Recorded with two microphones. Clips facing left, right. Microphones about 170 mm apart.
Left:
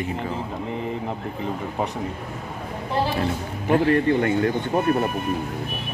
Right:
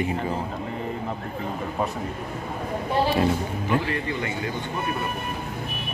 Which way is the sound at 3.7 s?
50° left (ahead or behind).